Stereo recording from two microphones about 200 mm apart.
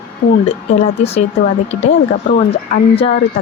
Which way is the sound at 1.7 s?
45° left (ahead or behind).